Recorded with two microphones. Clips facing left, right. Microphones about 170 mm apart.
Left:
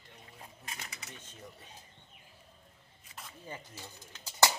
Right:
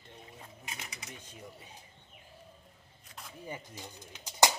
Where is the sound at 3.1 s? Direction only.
Centre (ahead or behind).